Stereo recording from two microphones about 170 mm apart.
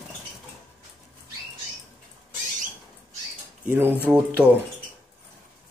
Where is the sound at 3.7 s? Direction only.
10° right (ahead or behind).